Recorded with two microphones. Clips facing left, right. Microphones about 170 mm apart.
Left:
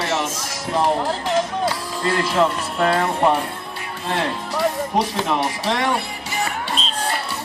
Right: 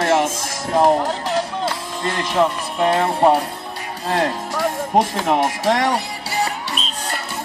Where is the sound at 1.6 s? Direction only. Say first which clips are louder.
Left 1 dB; 20° right (ahead or behind).